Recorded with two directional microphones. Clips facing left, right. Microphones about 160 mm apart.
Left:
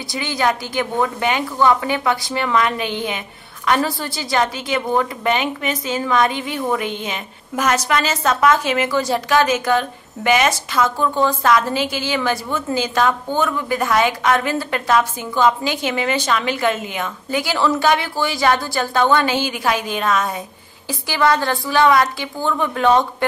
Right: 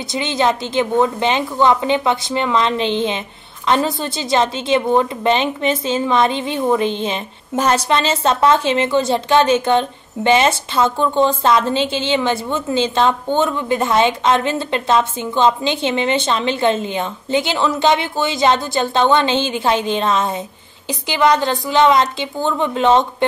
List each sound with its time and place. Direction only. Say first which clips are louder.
0.1 s a woman's voice: right 2 dB; 25° right (ahead or behind)